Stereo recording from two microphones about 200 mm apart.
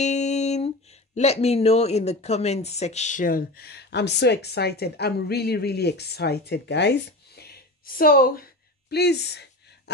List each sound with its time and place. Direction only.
0.0 s speech: 35° left (ahead or behind); by 9.5 s 55° left (ahead or behind)